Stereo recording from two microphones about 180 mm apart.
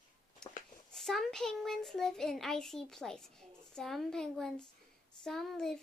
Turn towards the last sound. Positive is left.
turn(degrees=5)  # may be behind; listen again after turning